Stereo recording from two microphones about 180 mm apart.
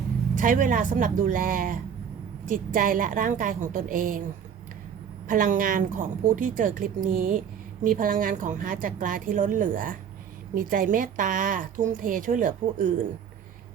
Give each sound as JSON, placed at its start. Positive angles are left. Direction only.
{"t": 0.3, "sound": "a woman's voice", "side_deg": -45}
{"t": 5.3, "sound": "a woman's voice", "side_deg": -50}